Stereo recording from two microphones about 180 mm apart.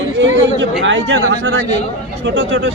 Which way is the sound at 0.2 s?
90° right.